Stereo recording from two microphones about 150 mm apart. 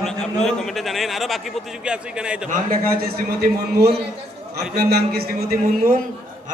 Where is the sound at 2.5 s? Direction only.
85° right.